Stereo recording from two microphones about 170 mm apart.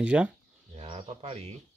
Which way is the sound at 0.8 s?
40° right (ahead or behind).